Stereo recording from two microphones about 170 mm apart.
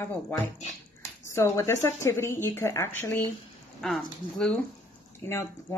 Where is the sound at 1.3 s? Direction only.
15° left (ahead or behind).